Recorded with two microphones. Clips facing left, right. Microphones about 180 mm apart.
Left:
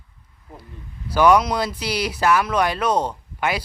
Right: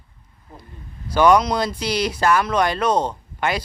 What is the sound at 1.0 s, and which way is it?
Speech, 5° left (ahead or behind).